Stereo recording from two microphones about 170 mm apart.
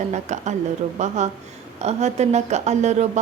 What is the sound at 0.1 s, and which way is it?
Speech, 45° right (ahead or behind).